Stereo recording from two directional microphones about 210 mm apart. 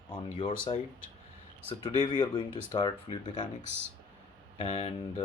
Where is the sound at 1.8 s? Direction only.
20° left (ahead or behind).